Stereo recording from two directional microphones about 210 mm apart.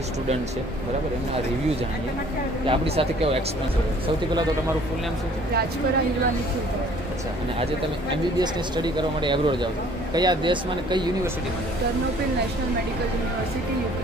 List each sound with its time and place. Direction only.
2.6 s speech: 25° right (ahead or behind)
8.1 s speech: 20° right (ahead or behind)